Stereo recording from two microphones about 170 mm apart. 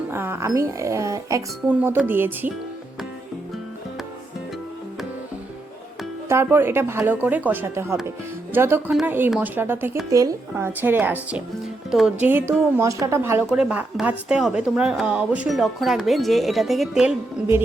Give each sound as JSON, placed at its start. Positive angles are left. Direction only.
{"t": 0.1, "sound": "speech", "side_deg": -15}
{"t": 6.2, "sound": "speech", "side_deg": -15}